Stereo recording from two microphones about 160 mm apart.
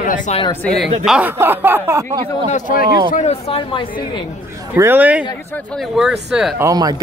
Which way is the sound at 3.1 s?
45° left (ahead or behind).